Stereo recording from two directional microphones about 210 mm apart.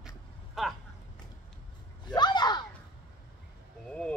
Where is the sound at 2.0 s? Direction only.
20° left (ahead or behind).